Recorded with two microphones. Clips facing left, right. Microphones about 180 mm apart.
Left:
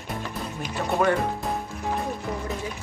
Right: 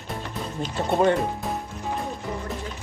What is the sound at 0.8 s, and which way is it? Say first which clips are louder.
Speech: right 2 dB; 25° right (ahead or behind).